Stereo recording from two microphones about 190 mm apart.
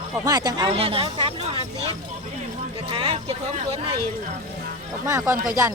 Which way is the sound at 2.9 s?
25° right (ahead or behind).